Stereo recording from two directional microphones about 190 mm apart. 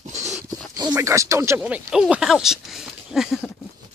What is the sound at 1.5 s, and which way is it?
Speech, 5° right (ahead or behind).